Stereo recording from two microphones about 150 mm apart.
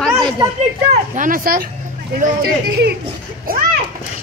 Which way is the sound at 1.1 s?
65° right (ahead or behind).